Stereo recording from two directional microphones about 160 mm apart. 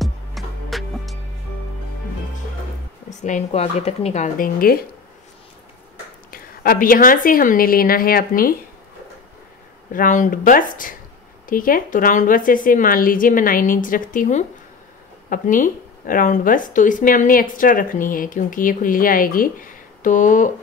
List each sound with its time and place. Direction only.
0.0 s music: centre (ahead or behind)
3.1 s speech: 50° left (ahead or behind)
4.6 s speech: 65° left (ahead or behind)
6.3 s a woman's voice: 70° left (ahead or behind)
9.9 s a woman's voice: 55° left (ahead or behind)